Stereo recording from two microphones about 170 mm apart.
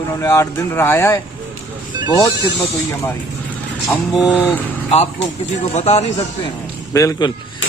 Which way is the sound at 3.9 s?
Centre (ahead or behind).